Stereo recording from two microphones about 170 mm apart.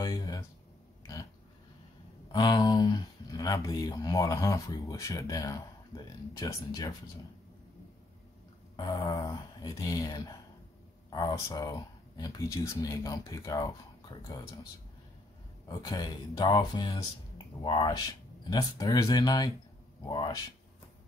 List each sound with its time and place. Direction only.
0.0 s speech: 20° left (ahead or behind)
2.3 s speech: 25° left (ahead or behind)
8.7 s speech: 25° left (ahead or behind)
15.7 s speech: 20° left (ahead or behind)